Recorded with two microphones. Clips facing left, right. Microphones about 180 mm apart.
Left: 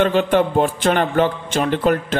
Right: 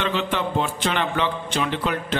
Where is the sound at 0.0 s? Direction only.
50° left (ahead or behind).